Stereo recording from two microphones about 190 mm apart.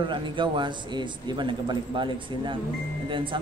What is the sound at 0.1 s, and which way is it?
Speech, 25° right (ahead or behind).